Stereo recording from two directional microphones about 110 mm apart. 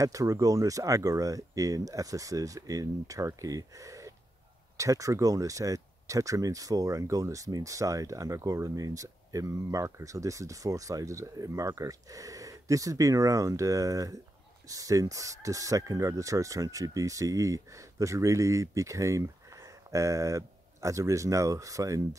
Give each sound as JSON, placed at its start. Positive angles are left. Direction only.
{"t": 0.0, "sound": "speech", "side_deg": -30}